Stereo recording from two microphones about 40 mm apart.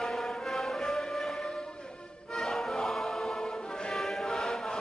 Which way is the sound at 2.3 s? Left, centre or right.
Centre.